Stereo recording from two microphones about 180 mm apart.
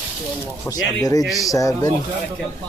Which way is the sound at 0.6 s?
20° left (ahead or behind).